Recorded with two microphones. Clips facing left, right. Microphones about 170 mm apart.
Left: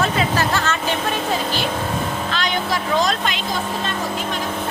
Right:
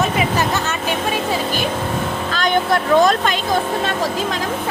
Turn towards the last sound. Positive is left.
turn(degrees=-50)  # may be behind; listen again after turning